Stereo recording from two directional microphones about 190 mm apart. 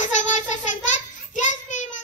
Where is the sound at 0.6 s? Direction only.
40° left (ahead or behind).